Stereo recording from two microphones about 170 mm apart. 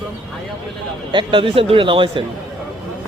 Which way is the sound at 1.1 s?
30° right (ahead or behind).